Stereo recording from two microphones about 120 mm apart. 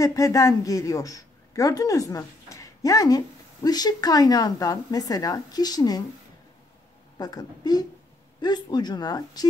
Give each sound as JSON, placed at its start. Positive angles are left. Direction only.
{"t": 0.0, "sound": "a woman's voice", "side_deg": 30}
{"t": 7.2, "sound": "speech", "side_deg": 35}